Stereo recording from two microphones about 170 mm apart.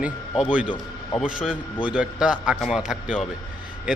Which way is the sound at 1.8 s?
5° right (ahead or behind).